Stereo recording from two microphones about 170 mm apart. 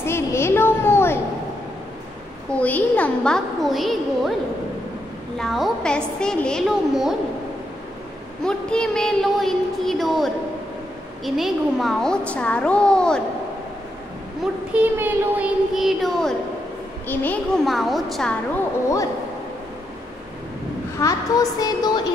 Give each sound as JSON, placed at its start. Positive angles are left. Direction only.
{"t": 0.0, "sound": "a sound", "side_deg": 15}
{"t": 2.5, "sound": "a child's voice", "side_deg": 10}
{"t": 5.4, "sound": "a child's voice", "side_deg": 0}
{"t": 8.5, "sound": "a child's voice", "side_deg": 5}
{"t": 14.4, "sound": "a child's voice", "side_deg": -10}
{"t": 17.6, "sound": "a child's voice", "side_deg": 0}
{"t": 21.0, "sound": "a woman's voice", "side_deg": 20}